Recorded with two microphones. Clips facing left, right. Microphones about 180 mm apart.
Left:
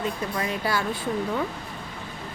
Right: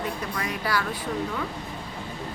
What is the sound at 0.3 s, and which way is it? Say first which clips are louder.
Speech: left 1 dB; 25° left (ahead or behind).